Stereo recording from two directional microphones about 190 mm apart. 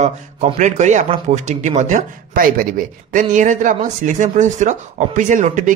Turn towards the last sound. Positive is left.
turn(degrees=-40)  # may be behind; listen again after turning